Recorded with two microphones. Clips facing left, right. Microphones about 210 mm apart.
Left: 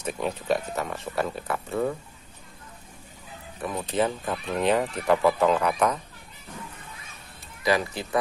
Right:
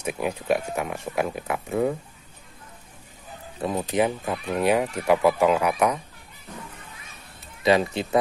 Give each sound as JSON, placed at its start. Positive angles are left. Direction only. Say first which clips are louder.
{"t": 0.0, "sound": "speech", "louder": "right 2 dB", "side_deg": -10}
{"t": 3.6, "sound": "speech", "louder": "right 4 dB", "side_deg": -20}
{"t": 4.0, "sound": "speech", "louder": "right 1 dB", "side_deg": -10}
{"t": 7.6, "sound": "speech", "louder": "right 4 dB", "side_deg": -25}